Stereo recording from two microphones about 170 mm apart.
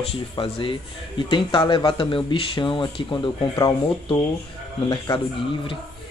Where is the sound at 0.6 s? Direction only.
30° left (ahead or behind).